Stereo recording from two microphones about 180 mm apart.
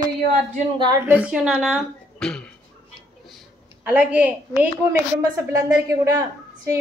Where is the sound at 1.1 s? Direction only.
5° right (ahead or behind).